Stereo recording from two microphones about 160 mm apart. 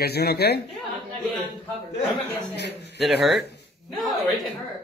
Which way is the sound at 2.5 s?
90° left.